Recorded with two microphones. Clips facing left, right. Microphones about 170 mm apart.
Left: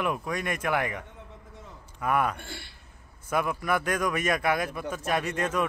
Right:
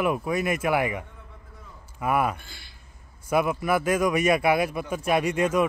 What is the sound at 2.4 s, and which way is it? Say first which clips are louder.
Speech: left 7 dB; 70° left (ahead or behind).